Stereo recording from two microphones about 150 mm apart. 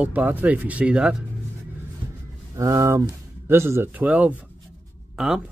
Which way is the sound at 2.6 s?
20° right (ahead or behind).